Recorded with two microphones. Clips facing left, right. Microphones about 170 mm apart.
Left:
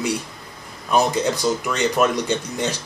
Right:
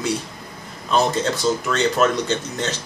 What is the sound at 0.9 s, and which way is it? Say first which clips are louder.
Speech: left 1 dB; 15° left (ahead or behind).